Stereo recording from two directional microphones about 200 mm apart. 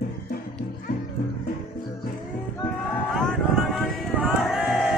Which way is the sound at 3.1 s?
Centre (ahead or behind).